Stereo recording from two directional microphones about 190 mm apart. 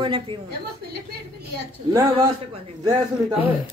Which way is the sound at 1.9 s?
15° right (ahead or behind).